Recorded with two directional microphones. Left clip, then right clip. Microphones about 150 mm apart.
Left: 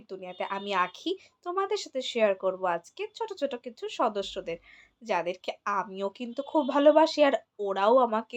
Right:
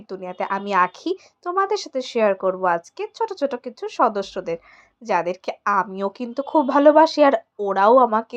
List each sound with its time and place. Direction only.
0.1 s speech: 45° right (ahead or behind)